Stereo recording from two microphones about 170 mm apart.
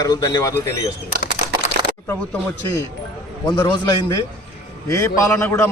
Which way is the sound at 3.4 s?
25° left (ahead or behind).